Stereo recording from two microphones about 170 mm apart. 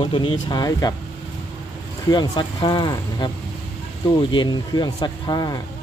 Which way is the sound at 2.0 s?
25° left (ahead or behind).